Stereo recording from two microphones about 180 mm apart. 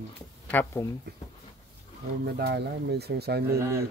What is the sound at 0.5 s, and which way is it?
Speech, 10° left (ahead or behind).